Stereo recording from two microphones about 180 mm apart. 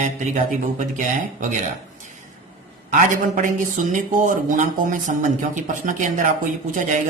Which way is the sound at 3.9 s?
45° right (ahead or behind).